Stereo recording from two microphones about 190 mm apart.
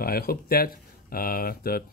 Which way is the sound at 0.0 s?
50° left (ahead or behind).